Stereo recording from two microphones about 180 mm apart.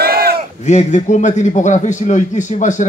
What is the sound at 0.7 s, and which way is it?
Speech, 40° left (ahead or behind).